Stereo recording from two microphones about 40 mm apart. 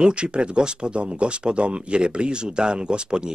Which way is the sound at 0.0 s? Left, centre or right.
Right.